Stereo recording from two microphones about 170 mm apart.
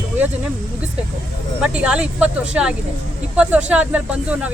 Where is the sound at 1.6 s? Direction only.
5° right (ahead or behind).